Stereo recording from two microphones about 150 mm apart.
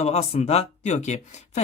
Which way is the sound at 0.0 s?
45° left (ahead or behind).